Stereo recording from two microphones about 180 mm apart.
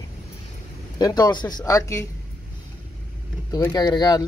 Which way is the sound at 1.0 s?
20° left (ahead or behind).